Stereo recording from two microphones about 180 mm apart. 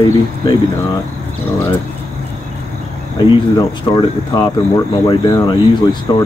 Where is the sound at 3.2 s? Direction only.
20° left (ahead or behind).